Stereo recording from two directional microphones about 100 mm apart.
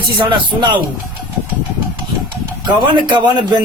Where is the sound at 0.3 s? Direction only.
50° right (ahead or behind).